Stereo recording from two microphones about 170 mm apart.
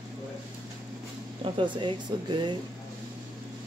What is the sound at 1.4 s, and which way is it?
Speech, 30° right (ahead or behind).